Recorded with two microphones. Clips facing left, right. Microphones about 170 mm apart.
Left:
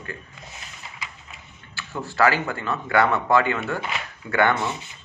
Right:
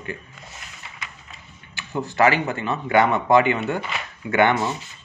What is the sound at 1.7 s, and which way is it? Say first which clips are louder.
Speech: right 4 dB; 20° right (ahead or behind).